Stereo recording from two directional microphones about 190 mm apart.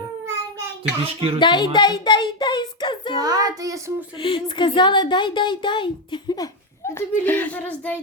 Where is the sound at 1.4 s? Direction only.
25° left (ahead or behind).